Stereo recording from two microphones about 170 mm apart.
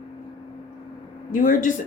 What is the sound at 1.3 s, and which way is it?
Speech, 50° left (ahead or behind).